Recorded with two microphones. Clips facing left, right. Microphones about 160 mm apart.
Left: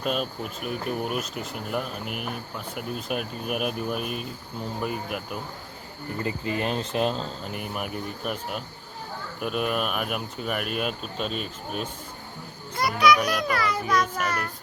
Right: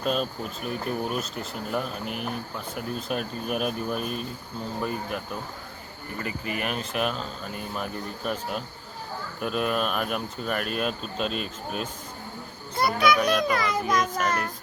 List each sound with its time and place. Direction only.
0.0 s speech: 5° left (ahead or behind)
6.2 s speech: 25° left (ahead or behind); by 11.9 s centre (ahead or behind)
12.7 s a child's voice: 30° right (ahead or behind)